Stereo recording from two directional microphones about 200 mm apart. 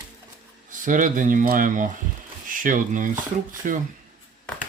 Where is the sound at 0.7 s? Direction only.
40° right (ahead or behind).